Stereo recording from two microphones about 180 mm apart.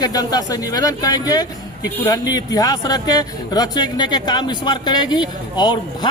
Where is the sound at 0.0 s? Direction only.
20° left (ahead or behind).